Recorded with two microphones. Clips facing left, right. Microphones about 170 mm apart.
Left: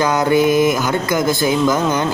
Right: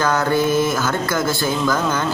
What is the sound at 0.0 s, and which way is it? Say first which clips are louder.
Speech: left 4 dB; 15° left (ahead or behind).